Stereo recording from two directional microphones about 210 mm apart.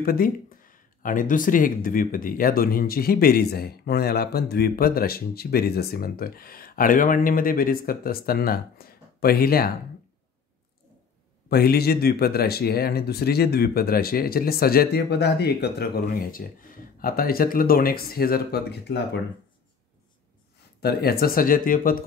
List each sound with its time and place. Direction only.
0.0 s speech: 45° left (ahead or behind)
11.4 s speech: 45° left (ahead or behind)
20.8 s speech: 45° left (ahead or behind)